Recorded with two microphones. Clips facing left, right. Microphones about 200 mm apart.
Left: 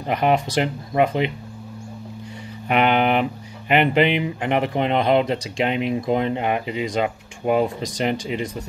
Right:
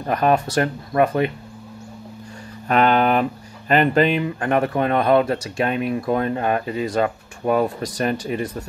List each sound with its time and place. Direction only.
0.0 s speech: 20° left (ahead or behind)
2.7 s speech: 15° left (ahead or behind)